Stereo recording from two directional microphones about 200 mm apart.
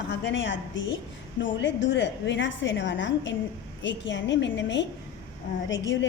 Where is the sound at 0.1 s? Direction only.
65° left (ahead or behind).